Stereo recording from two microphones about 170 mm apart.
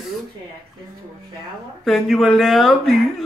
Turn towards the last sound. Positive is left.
turn(degrees=0)  # may be behind; listen again after turning